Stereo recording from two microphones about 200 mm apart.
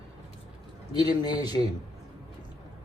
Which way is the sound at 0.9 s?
20° left (ahead or behind).